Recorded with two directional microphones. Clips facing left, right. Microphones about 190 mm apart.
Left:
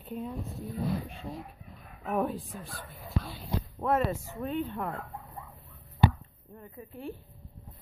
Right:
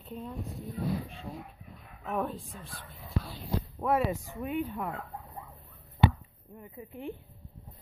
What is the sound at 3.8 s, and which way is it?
Speech, 10° right (ahead or behind).